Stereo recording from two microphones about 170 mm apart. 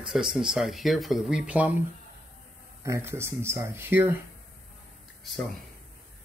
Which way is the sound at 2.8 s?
15° right (ahead or behind).